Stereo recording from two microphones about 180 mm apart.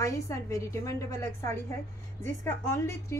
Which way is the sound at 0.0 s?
15° left (ahead or behind).